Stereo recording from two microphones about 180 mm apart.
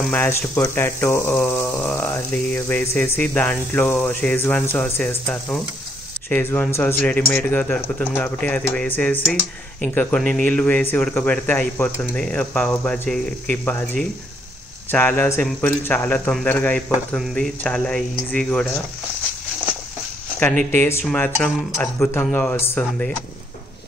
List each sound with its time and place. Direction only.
0.0 s speech: 10° left (ahead or behind)
20.7 s speech: 10° left (ahead or behind)